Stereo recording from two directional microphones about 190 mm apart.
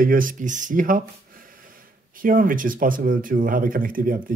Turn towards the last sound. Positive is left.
turn(degrees=-45)  # may be behind; listen again after turning